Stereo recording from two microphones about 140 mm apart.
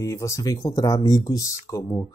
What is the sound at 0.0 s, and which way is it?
Speech, 20° left (ahead or behind).